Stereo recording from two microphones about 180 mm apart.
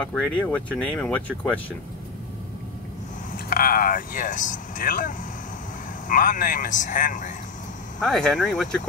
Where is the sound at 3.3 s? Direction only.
55° left (ahead or behind).